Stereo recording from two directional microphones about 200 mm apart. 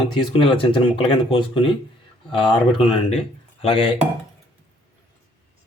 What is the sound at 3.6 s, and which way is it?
Speech, 25° left (ahead or behind).